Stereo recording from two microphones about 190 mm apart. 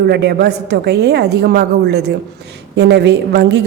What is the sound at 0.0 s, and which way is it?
A woman's voice, 60° right (ahead or behind).